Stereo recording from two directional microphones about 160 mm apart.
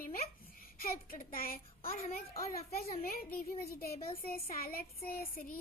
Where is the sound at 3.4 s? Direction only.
70° left (ahead or behind).